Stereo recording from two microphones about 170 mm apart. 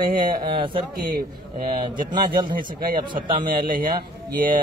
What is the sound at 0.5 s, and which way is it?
Speech, 30° right (ahead or behind).